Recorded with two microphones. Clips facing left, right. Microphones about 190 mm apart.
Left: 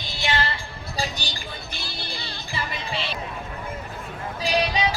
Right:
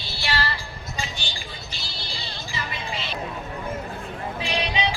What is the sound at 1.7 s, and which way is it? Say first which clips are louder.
Music: left 2 dB; 55° left (ahead or behind).